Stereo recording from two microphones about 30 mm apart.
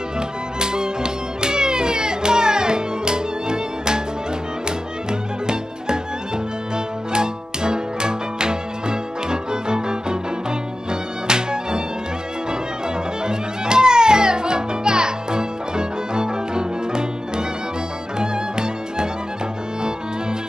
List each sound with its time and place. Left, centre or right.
0.6 s music: right
5.5 s music: right